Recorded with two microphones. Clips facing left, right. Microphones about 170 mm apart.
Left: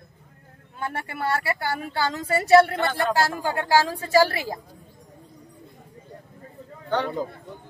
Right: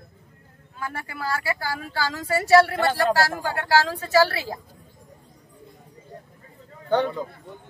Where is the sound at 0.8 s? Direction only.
25° left (ahead or behind).